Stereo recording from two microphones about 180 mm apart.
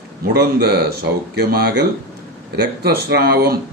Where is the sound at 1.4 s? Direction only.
60° right (ahead or behind).